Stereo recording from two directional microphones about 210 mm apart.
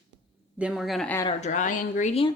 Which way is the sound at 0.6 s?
5° right (ahead or behind).